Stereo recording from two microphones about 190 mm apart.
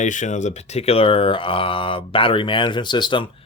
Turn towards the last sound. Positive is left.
turn(degrees=25)  # may be behind; listen again after turning